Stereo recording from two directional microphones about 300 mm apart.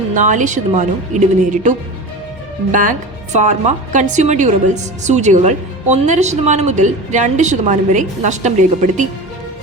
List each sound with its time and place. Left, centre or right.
0.1 s a woman's voice: right
3.3 s a woman's voice: right